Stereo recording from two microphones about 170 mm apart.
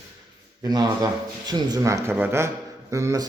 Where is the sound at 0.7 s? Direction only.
25° right (ahead or behind).